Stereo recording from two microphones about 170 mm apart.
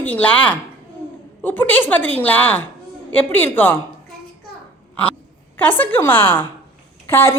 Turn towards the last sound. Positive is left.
turn(degrees=15)  # may be behind; listen again after turning